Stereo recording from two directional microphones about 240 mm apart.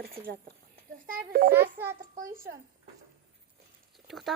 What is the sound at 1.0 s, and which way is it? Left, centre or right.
A child's voice, right.